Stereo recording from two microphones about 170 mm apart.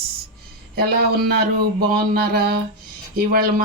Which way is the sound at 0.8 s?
65° right (ahead or behind).